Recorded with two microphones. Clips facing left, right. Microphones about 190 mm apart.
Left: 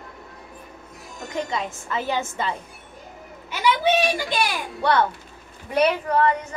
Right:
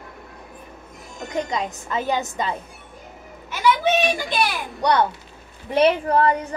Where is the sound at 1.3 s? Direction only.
20° right (ahead or behind).